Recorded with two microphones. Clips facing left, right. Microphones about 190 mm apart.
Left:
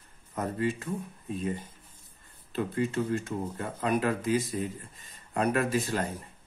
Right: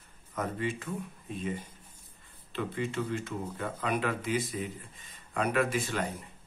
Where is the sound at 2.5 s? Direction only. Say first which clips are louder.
Left 4 dB; 40° left (ahead or behind).